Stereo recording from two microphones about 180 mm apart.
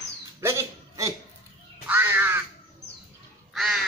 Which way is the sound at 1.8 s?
10° right (ahead or behind).